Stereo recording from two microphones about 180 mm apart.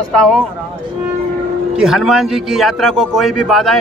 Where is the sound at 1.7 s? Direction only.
Centre (ahead or behind).